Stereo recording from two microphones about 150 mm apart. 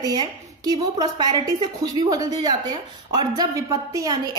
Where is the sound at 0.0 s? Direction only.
25° right (ahead or behind).